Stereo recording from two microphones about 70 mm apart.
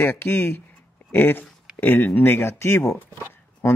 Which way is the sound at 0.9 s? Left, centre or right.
Left.